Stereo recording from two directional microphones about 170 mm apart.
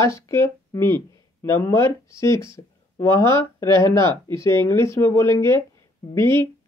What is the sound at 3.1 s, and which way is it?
Speech, 25° right (ahead or behind).